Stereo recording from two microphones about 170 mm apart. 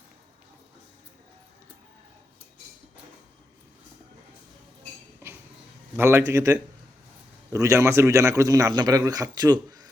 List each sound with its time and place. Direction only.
5.2 s chink: 15° right (ahead or behind)
6.0 s speech: 15° right (ahead or behind)